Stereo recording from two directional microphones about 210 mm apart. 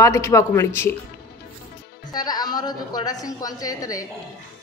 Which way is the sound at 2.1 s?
20° left (ahead or behind).